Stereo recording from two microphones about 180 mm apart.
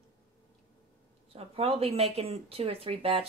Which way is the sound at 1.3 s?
35° right (ahead or behind).